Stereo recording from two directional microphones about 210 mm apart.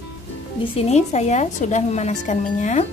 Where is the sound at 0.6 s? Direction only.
30° left (ahead or behind).